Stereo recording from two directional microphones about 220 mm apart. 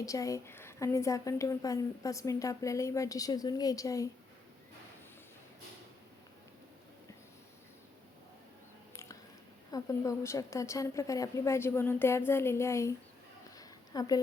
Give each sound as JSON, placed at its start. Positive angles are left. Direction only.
{"t": 0.0, "sound": "a woman's voice", "side_deg": 15}
{"t": 9.7, "sound": "a woman's voice", "side_deg": 15}
{"t": 13.6, "sound": "a sound", "side_deg": 15}